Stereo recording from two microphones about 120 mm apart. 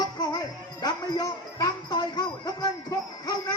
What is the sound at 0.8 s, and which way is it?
Speech, 35° left (ahead or behind).